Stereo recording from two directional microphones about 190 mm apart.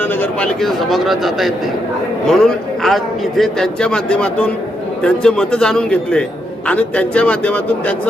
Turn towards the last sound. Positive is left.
turn(degrees=5)  # may be behind; listen again after turning